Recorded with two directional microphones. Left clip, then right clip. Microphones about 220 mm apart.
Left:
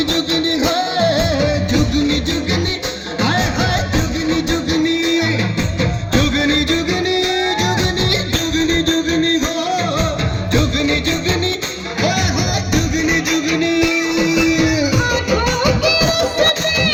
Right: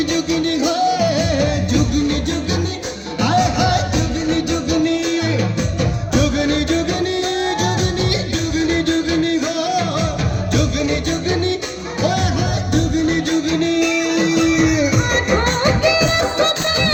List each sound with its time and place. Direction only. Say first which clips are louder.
0.1 s music: left 2 dB; 15° left (ahead or behind)
8.1 s music: left 3 dB; 5° left (ahead or behind)
10.5 s music: left 3 dB; 20° left (ahead or behind)
12.7 s music: left 1 dB; 35° left (ahead or behind)